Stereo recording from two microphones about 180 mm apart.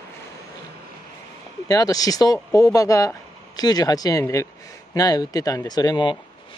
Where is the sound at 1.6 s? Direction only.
20° left (ahead or behind).